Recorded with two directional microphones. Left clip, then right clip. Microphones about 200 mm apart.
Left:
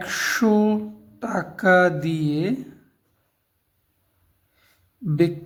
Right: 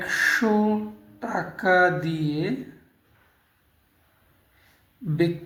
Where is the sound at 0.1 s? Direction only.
55° left (ahead or behind).